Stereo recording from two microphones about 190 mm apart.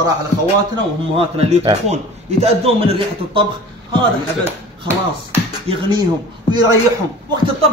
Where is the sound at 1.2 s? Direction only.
30° right (ahead or behind).